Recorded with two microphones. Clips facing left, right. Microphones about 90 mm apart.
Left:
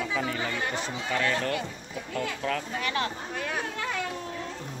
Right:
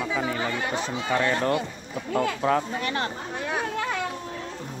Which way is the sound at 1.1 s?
30° right (ahead or behind).